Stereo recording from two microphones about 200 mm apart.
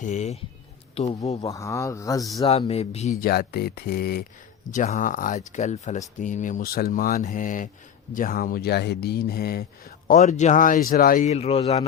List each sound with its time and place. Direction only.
0.0 s speech: 35° left (ahead or behind)
1.4 s speech: 15° left (ahead or behind)
2.5 s speech: 30° left (ahead or behind)
3.2 s speech: 50° left (ahead or behind)
4.7 s speech: 40° left (ahead or behind)